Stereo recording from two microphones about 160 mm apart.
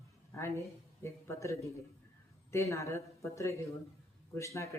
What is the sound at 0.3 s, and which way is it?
A woman's voice, 20° left (ahead or behind).